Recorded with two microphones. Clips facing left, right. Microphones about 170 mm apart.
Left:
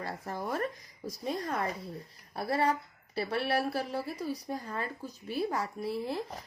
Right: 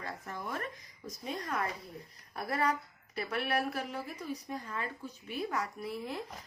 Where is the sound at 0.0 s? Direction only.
35° left (ahead or behind).